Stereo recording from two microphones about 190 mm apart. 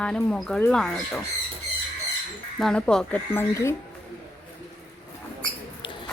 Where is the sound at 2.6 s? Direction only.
5° left (ahead or behind).